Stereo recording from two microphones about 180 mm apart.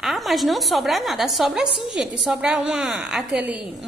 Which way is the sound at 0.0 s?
Centre (ahead or behind).